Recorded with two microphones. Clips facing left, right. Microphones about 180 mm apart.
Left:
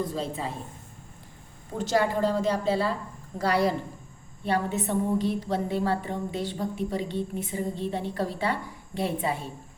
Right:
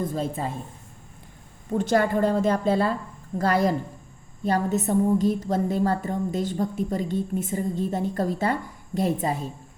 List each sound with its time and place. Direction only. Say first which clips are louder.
0.0 s a woman's voice: right 3 dB; 50° right (ahead or behind)
1.8 s a woman's voice: right 3 dB; 55° right (ahead or behind)